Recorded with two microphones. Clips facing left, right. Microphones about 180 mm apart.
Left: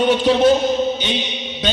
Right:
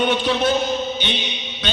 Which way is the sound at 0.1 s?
35° left (ahead or behind).